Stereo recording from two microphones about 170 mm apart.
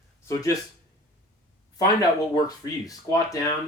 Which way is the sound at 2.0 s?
20° left (ahead or behind).